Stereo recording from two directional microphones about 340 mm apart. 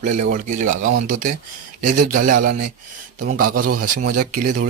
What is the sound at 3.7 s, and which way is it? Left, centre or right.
Speech, right.